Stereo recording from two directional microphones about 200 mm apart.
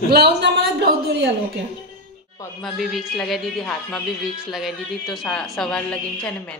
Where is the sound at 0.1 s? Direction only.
55° right (ahead or behind).